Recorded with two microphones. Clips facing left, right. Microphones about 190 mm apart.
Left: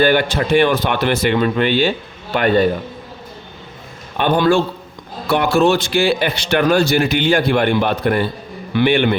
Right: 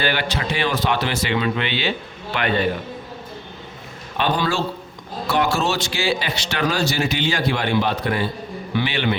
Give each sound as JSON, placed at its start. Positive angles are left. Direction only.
{"t": 0.0, "sound": "a man's voice", "side_deg": 50}
{"t": 4.2, "sound": "a man's voice", "side_deg": 55}